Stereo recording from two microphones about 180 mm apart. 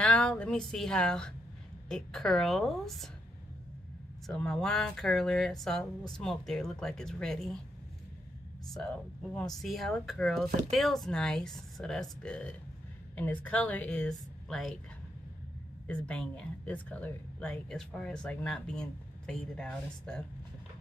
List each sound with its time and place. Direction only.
0.0 s a woman's voice: 5° left (ahead or behind)
4.3 s speech: 5° left (ahead or behind)
8.7 s a woman's voice: 5° left (ahead or behind)
15.9 s speech: 5° left (ahead or behind)